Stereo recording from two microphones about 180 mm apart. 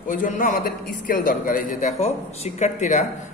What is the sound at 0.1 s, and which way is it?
A man's voice, 50° left (ahead or behind).